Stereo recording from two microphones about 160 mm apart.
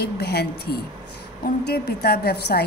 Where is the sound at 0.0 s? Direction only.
85° left.